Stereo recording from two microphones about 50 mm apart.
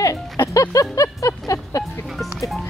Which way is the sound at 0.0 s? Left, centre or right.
Left.